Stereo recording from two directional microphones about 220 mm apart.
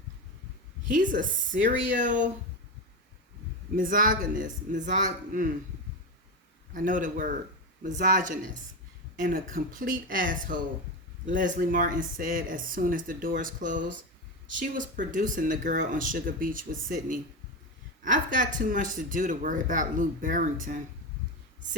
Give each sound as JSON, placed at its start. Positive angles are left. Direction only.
{"t": 0.9, "sound": "speech", "side_deg": -35}
{"t": 3.8, "sound": "speech", "side_deg": -40}
{"t": 6.7, "sound": "speech", "side_deg": -35}